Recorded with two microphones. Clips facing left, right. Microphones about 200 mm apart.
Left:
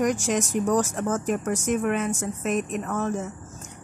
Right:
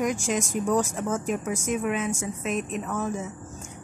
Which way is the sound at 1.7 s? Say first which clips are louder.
Left 2 dB; centre (ahead or behind).